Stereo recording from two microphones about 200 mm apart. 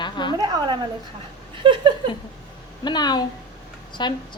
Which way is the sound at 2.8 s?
20° left (ahead or behind).